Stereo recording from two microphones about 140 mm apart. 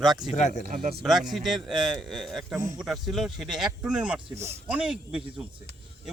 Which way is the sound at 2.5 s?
20° right (ahead or behind).